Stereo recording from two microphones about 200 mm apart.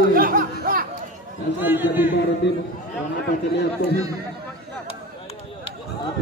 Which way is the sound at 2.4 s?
60° left (ahead or behind).